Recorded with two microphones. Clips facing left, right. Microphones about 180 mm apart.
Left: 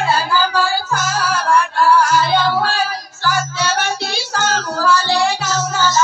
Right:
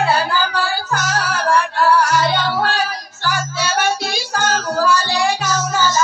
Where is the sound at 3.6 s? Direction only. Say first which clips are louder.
Right 1 dB; 10° right (ahead or behind).